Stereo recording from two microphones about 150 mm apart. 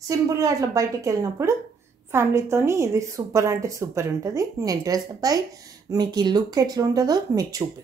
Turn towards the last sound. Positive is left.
turn(degrees=-25)  # may be behind; listen again after turning